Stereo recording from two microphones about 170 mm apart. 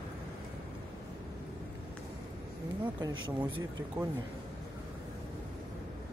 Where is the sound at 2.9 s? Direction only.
25° right (ahead or behind).